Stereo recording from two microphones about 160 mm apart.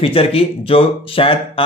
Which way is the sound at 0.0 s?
35° left (ahead or behind).